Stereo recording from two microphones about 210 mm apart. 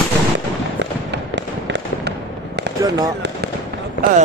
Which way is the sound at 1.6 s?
55° right (ahead or behind).